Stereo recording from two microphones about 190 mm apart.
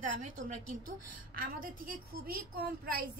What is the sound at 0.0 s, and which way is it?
A woman's voice, 45° right (ahead or behind).